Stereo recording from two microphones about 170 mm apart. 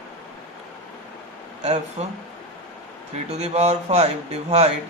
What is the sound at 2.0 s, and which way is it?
Speech, 40° right (ahead or behind).